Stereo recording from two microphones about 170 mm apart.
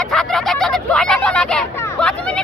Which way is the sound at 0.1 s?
5° left (ahead or behind).